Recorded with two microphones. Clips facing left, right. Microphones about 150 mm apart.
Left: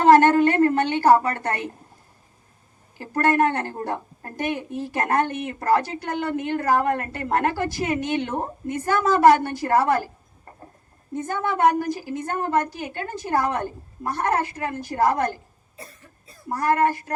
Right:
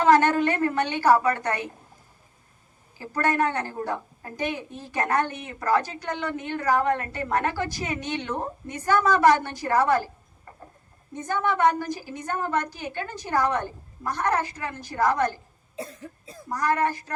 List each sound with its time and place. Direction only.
0.0 s a sound: 50° left (ahead or behind)
3.0 s a woman's voice: 50° left (ahead or behind)
11.3 s a woman's voice: 50° left (ahead or behind)
15.7 s cough: 90° right
16.5 s a woman's voice: 55° left (ahead or behind)